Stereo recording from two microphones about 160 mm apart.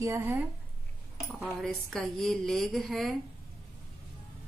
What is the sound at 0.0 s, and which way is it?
Speech, 15° right (ahead or behind).